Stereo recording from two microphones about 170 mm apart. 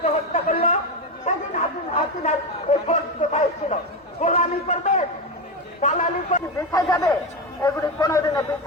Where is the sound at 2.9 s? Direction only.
45° left (ahead or behind).